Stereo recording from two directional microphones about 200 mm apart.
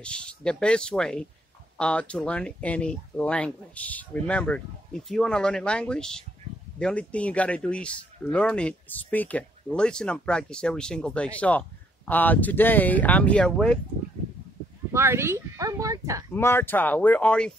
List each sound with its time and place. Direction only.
0.0 s speech: 5° left (ahead or behind)
14.9 s speech: 15° right (ahead or behind)
16.3 s speech: 10° left (ahead or behind)